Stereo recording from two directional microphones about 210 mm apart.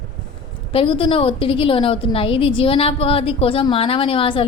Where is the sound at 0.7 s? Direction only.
25° left (ahead or behind).